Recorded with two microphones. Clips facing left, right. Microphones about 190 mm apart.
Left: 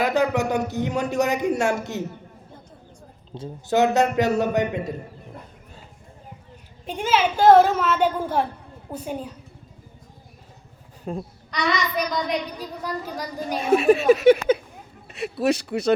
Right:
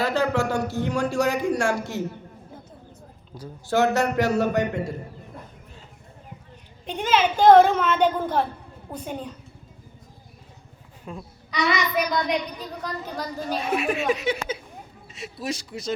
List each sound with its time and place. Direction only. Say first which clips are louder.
0.0 s speech: left 2 dB; 15° left (ahead or behind)
3.3 s speech: left 2 dB; 20° left (ahead or behind)
6.8 s a child's voice: even; 5° left (ahead or behind)
11.1 s speech: left 7 dB; 35° left (ahead or behind)
11.5 s child singing: right 1 dB; 5° right (ahead or behind)
12.5 s a child's voice: left 2 dB; 10° left (ahead or behind)
13.6 s speech: left 9 dB; 30° left (ahead or behind); by 15.9 s 65° left (ahead or behind)